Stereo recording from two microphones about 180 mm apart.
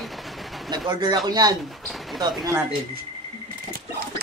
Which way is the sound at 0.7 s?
25° right (ahead or behind).